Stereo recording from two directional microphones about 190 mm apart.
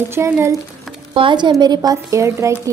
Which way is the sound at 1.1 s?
25° right (ahead or behind).